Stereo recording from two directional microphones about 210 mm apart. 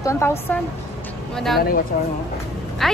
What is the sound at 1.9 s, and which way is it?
Speech, 45° left (ahead or behind).